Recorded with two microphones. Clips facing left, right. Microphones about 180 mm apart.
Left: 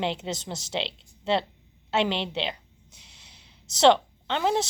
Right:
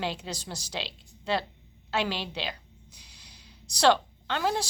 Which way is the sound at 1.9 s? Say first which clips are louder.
Left 4 dB; 25° left (ahead or behind).